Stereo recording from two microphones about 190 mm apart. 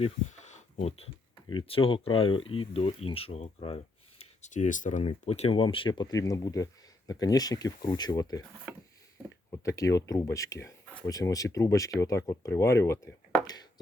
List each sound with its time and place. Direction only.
0.0 s speech: 35° left (ahead or behind); by 8.4 s 20° left (ahead or behind)
9.6 s speech: 15° left (ahead or behind)